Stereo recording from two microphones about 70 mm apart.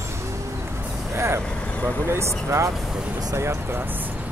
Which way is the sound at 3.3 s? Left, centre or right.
Right.